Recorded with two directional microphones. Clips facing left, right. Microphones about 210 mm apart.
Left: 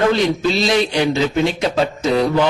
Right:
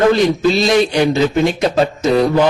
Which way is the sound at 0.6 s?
50° right (ahead or behind).